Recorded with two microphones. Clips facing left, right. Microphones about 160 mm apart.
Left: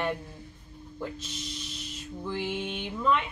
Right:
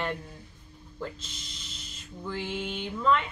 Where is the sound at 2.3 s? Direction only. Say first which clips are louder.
Left 1 dB; 15° left (ahead or behind).